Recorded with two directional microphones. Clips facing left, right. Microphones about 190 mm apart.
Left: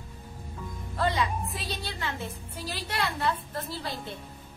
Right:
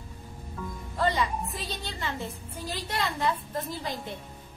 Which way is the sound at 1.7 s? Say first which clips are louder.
Even; 15° right (ahead or behind).